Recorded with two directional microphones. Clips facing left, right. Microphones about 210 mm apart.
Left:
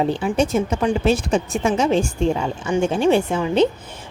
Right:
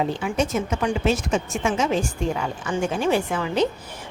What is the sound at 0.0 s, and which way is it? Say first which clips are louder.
Speech: left 4 dB; 30° left (ahead or behind).